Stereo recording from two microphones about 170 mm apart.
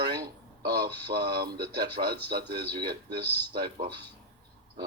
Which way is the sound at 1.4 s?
65° right (ahead or behind).